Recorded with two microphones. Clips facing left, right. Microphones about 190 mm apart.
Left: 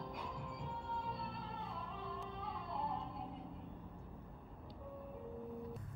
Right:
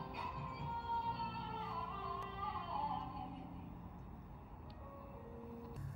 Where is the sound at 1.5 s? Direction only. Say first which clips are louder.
Even; centre (ahead or behind).